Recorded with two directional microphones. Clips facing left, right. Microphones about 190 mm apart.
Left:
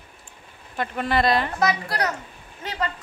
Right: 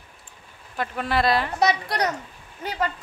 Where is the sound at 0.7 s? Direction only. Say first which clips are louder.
Left 1 dB; centre (ahead or behind).